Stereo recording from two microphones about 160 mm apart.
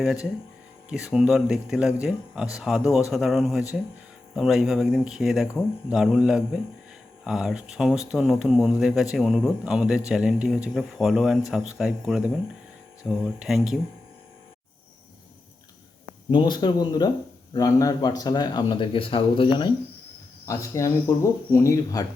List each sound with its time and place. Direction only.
0.0 s speech: 5° right (ahead or behind)
16.3 s speech: 25° left (ahead or behind)